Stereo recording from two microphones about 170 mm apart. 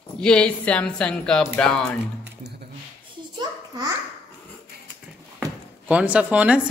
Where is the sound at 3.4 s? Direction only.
20° right (ahead or behind).